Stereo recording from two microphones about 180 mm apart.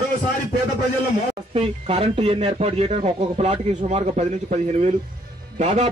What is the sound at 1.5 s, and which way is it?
A man's voice, 35° right (ahead or behind).